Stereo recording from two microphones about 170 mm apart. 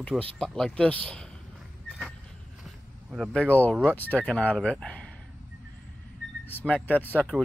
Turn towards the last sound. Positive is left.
turn(degrees=5)  # may be behind; listen again after turning